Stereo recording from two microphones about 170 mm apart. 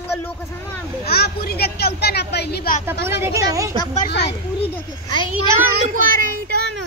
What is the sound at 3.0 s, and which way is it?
Speech, 15° right (ahead or behind).